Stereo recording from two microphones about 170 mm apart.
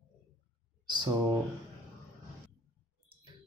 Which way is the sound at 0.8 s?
25° right (ahead or behind).